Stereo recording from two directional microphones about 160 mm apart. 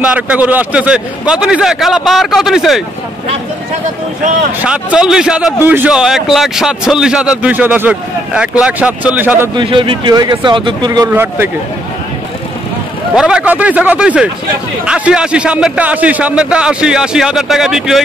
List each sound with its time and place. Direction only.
0.0 s a man's voice: 10° right (ahead or behind)
4.6 s a man's voice: 5° right (ahead or behind)
9.6 s speech: 30° right (ahead or behind)
11.1 s a man's voice: 15° right (ahead or behind)
13.1 s a man's voice: 5° right (ahead or behind)